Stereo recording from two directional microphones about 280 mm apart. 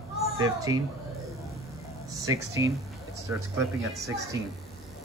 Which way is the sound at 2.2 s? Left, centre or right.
Centre.